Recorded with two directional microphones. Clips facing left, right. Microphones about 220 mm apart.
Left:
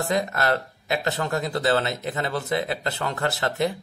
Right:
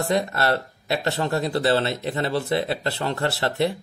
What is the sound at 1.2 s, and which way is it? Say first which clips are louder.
A man's voice: right 2 dB; 30° right (ahead or behind).